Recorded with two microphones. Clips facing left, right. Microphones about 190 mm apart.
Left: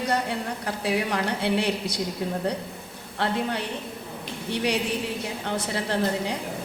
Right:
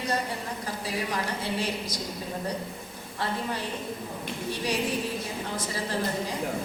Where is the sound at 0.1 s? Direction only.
65° left (ahead or behind).